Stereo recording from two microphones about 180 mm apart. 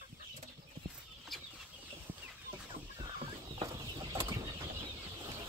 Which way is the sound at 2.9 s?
25° right (ahead or behind).